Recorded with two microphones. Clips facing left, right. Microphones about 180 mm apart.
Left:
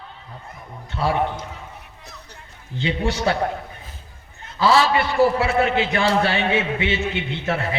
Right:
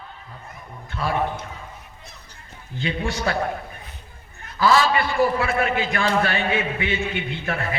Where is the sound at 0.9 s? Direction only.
20° left (ahead or behind).